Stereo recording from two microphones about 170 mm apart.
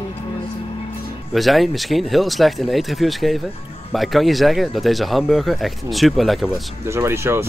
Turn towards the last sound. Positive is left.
turn(degrees=-15)  # may be behind; listen again after turning